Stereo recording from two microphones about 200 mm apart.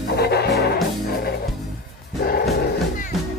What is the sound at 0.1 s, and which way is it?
Music, 55° left (ahead or behind).